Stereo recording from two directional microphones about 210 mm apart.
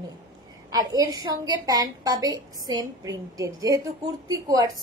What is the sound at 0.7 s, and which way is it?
A woman's voice, 20° right (ahead or behind).